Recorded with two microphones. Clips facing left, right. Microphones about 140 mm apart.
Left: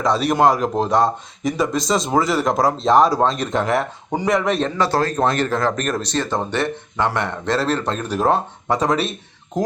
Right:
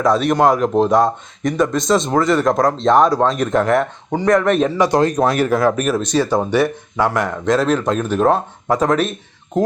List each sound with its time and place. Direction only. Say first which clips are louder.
0.0 s speech: right 2 dB; centre (ahead or behind)
4.6 s speech: right 5 dB; 15° right (ahead or behind)
5.2 s speech: right 4 dB; 5° right (ahead or behind)